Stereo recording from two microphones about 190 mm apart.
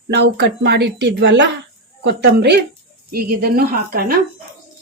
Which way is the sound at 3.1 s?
50° right (ahead or behind).